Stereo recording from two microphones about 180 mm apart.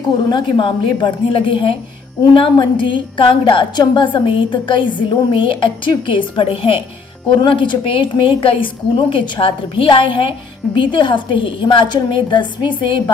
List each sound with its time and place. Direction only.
0.3 s a woman's voice: 25° left (ahead or behind)